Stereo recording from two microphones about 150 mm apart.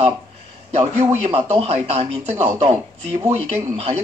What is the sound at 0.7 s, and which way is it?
Speech, 50° right (ahead or behind).